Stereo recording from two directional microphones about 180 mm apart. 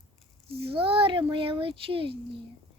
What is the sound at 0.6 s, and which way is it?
Speech, 30° right (ahead or behind).